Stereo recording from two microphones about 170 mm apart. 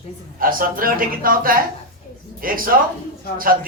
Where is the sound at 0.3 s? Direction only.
55° right (ahead or behind).